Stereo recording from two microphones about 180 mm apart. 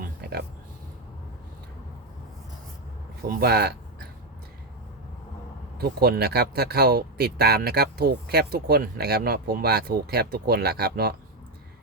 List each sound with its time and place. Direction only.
0.0 s a sound: 60° right (ahead or behind)
3.4 s speech: 65° right (ahead or behind)
5.7 s speech: 60° right (ahead or behind)